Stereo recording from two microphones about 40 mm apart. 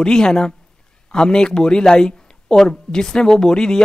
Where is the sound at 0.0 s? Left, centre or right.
Centre.